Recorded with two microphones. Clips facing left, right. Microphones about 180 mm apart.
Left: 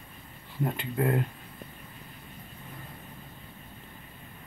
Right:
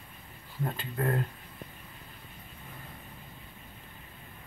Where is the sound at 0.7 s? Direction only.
20° left (ahead or behind).